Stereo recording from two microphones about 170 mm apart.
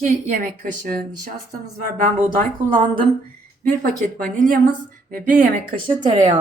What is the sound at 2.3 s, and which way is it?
A woman's voice, 50° right (ahead or behind).